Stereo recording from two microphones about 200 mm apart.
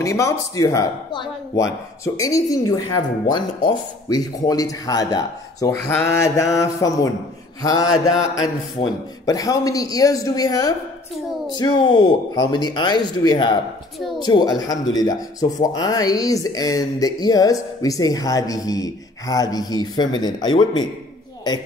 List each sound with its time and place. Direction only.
0.0 s speech: 15° left (ahead or behind)